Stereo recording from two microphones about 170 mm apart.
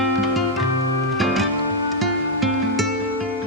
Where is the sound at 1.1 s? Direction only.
Centre (ahead or behind).